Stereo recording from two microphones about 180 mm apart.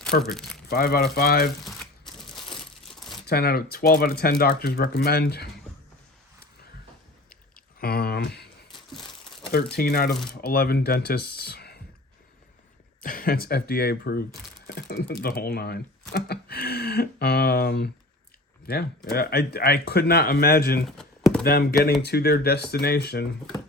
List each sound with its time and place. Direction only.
0.1 s speech: 60° left (ahead or behind)
3.2 s speech: 60° left (ahead or behind)
7.8 s speech: 60° left (ahead or behind)
8.7 s crumpling: centre (ahead or behind)
9.5 s speech: 60° left (ahead or behind)
13.0 s speech: 50° left (ahead or behind)
20.8 s a sound: centre (ahead or behind)
21.4 s speech: 60° left (ahead or behind)